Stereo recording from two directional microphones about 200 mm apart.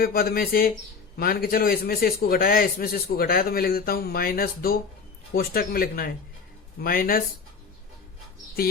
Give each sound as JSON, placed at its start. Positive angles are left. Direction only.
{"t": 0.0, "sound": "a man's voice", "side_deg": 45}